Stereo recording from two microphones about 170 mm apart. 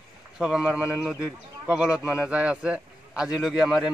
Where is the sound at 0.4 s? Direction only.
5° right (ahead or behind).